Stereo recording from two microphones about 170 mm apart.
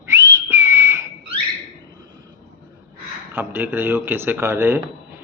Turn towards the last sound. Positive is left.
turn(degrees=-15)  # may be behind; listen again after turning